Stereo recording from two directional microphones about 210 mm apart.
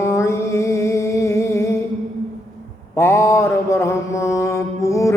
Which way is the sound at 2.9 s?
10° left (ahead or behind).